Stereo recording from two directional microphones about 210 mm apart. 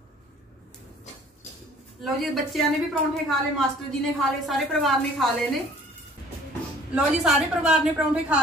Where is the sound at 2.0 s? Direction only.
Centre (ahead or behind).